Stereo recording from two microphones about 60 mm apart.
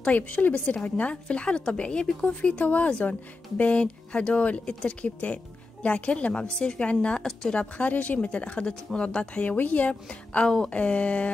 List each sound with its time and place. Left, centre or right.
0.0 s speech: left
10.0 s speech: centre